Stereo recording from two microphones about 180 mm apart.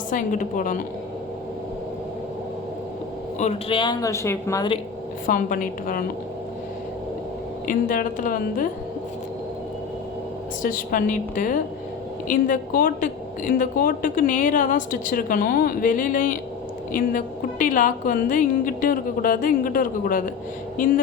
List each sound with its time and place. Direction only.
0.1 s a woman's voice: 45° left (ahead or behind)
3.3 s speech: 40° left (ahead or behind)
3.8 s speech: 20° left (ahead or behind)
5.2 s a woman's voice: 50° left (ahead or behind)
7.7 s a woman's voice: 50° left (ahead or behind)
10.6 s a woman's voice: 50° left (ahead or behind)